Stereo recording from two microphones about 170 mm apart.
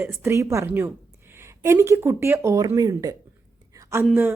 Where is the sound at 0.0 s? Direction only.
15° right (ahead or behind).